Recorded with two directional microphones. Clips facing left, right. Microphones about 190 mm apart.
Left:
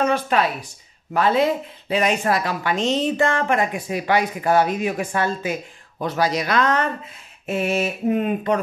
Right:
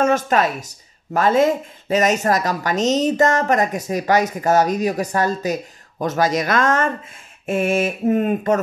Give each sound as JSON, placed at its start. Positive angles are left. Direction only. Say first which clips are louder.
{"t": 0.0, "sound": "speech", "louder": "right 3 dB", "side_deg": -45}